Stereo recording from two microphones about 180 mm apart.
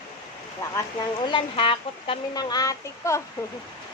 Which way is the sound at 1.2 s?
25° left (ahead or behind).